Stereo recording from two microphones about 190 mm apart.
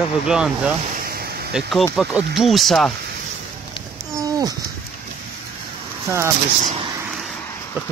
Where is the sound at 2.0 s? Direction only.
5° right (ahead or behind).